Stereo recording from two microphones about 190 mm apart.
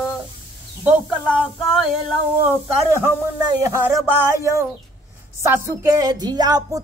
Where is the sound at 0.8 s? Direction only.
5° right (ahead or behind).